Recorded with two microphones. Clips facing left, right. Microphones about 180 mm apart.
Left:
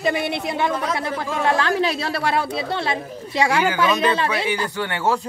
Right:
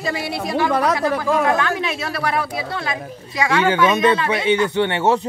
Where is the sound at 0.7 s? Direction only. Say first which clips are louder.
Right 6 dB; 70° right (ahead or behind).